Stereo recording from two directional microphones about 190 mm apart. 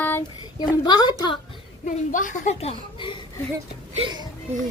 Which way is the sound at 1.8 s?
45° left (ahead or behind).